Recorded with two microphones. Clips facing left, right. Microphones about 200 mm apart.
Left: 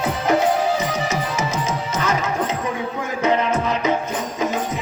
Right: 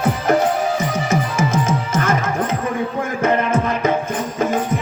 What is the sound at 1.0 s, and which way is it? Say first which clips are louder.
Music: right 4 dB; 50° right (ahead or behind).